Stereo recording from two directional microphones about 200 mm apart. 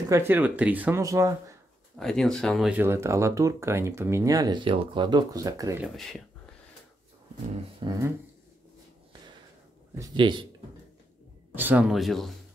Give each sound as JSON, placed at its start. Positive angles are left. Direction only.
{"t": 0.1, "sound": "speech", "side_deg": -10}
{"t": 2.0, "sound": "speech", "side_deg": 0}
{"t": 5.9, "sound": "speech", "side_deg": 0}
{"t": 7.8, "sound": "speech", "side_deg": -20}
{"t": 9.9, "sound": "a man's voice", "side_deg": -20}
{"t": 11.5, "sound": "speech", "side_deg": -10}